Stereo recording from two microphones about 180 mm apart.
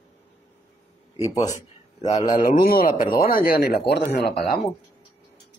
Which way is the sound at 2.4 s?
55° left (ahead or behind).